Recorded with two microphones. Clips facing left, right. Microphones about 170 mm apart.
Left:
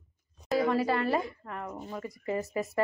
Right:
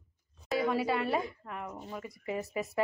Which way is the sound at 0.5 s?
Centre (ahead or behind).